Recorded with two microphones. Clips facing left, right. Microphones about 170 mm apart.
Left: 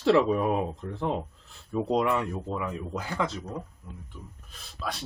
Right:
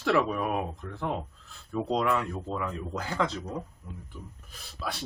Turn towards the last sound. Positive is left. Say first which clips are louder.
# left 1 dB
turn(degrees=-5)  # may be behind; listen again after turning